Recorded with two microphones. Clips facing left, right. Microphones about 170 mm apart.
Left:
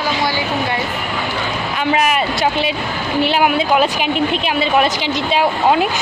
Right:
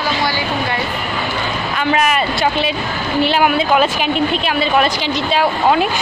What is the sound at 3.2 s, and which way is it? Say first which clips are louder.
A woman's voice: right 1 dB; 10° left (ahead or behind).